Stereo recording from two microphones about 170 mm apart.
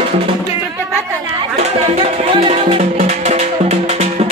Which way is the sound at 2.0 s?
35° right (ahead or behind).